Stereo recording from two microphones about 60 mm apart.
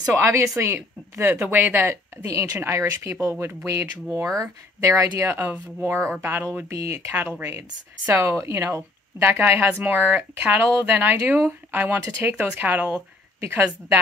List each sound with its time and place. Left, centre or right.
0.1 s speech: right
1.4 s a woman's voice: right
2.2 s speech: right
2.6 s speech: right
4.3 s speech: right
4.8 s a woman's voice: right